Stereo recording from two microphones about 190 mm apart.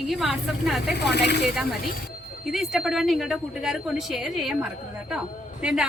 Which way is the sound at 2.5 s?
Centre (ahead or behind).